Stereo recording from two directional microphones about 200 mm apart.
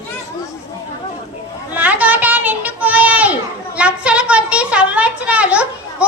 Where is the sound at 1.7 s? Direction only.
10° right (ahead or behind).